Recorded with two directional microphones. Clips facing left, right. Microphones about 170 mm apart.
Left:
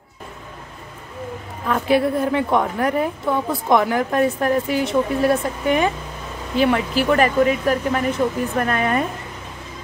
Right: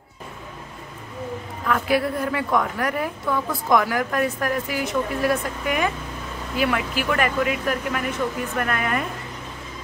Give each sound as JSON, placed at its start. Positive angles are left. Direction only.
{"t": 1.7, "sound": "a woman's voice", "side_deg": 25}